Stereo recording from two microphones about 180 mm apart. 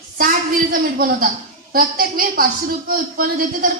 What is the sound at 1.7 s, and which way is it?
Speech, 50° right (ahead or behind).